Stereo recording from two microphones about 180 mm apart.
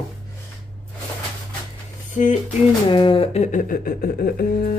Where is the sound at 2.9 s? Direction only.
30° left (ahead or behind); by 4.8 s 55° left (ahead or behind).